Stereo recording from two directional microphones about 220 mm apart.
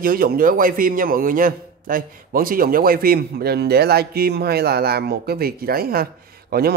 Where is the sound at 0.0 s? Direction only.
40° right (ahead or behind).